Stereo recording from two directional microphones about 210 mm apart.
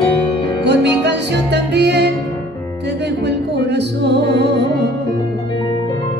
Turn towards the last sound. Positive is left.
turn(degrees=-55)  # may be behind; listen again after turning